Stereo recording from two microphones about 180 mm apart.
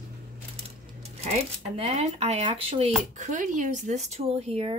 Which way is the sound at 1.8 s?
35° right (ahead or behind).